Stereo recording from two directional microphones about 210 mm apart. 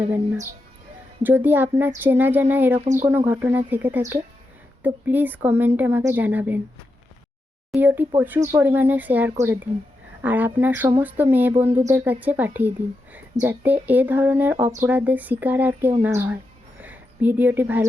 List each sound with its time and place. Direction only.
0.0 s a woman's voice: 10° right (ahead or behind)
7.7 s a woman's voice: 10° right (ahead or behind)